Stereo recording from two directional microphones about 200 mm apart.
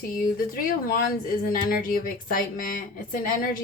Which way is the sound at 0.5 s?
45° left (ahead or behind).